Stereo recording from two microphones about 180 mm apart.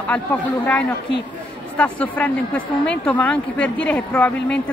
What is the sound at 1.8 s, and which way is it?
Speech, 10° left (ahead or behind).